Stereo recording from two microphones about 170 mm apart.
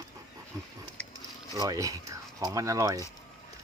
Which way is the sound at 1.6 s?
20° right (ahead or behind).